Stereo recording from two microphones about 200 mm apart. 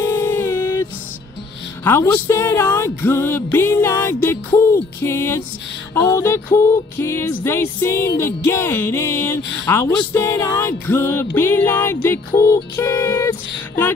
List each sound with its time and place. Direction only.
0.0 s music: 10° left (ahead or behind)
1.9 s speech: 10° left (ahead or behind)